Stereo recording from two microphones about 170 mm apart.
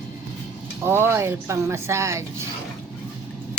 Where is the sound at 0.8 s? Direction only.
15° right (ahead or behind).